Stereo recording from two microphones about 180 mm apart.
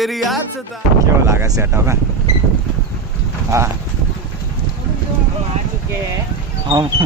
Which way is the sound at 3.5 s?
15° right (ahead or behind).